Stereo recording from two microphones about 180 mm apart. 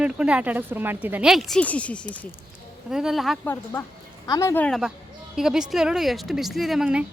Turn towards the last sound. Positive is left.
turn(degrees=-5)  # may be behind; listen again after turning